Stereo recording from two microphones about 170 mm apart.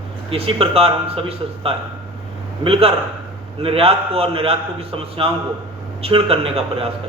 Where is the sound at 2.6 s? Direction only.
35° right (ahead or behind).